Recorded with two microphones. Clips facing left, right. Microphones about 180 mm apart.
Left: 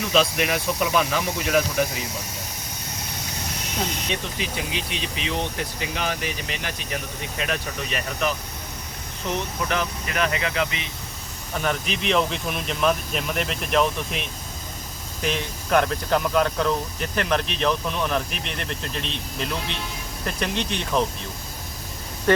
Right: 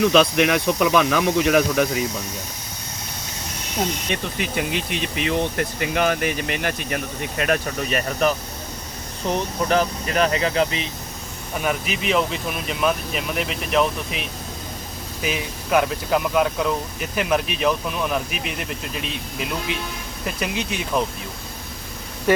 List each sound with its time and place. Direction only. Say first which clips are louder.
0.3 s speech: right 5 dB; 70° right (ahead or behind)
4.1 s speech: right 3 dB; 55° right (ahead or behind); by 10.8 s 35° right (ahead or behind)
11.6 s speech: right 2 dB; 5° right (ahead or behind)